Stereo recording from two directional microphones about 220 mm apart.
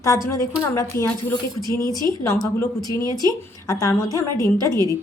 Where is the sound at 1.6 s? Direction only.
15° right (ahead or behind).